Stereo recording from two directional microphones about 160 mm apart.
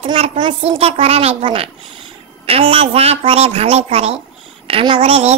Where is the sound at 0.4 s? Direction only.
35° right (ahead or behind).